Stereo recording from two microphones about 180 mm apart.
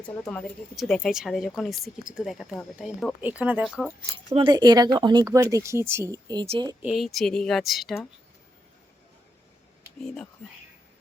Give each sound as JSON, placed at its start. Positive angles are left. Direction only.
{"t": 0.0, "sound": "speech", "side_deg": 10}
{"t": 4.4, "sound": "speech", "side_deg": -25}
{"t": 6.4, "sound": "speech", "side_deg": -35}
{"t": 6.8, "sound": "speech", "side_deg": 0}